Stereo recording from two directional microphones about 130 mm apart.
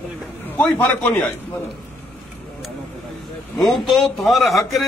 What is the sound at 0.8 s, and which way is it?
Speech, 15° left (ahead or behind).